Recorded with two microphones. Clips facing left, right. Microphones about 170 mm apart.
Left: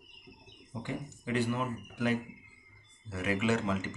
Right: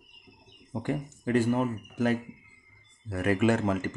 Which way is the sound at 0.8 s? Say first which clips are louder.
Right 7 dB; 45° right (ahead or behind).